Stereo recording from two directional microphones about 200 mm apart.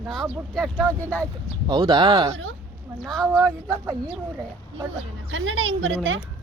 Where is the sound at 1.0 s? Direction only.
10° left (ahead or behind).